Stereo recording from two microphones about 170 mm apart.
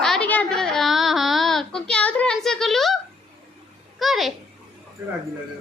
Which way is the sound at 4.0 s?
Centre (ahead or behind).